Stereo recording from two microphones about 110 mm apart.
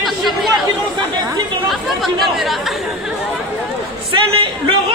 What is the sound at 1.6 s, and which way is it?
Speech, centre (ahead or behind).